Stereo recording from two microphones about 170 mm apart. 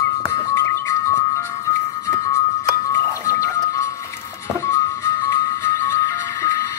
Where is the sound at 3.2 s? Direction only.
20° left (ahead or behind).